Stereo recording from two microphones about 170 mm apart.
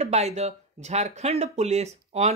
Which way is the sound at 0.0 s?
40° right (ahead or behind).